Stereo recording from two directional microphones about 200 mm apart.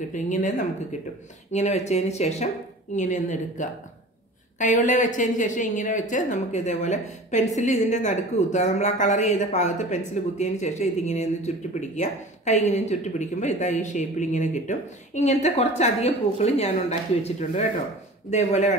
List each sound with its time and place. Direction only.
0.1 s a woman's voice: 40° left (ahead or behind)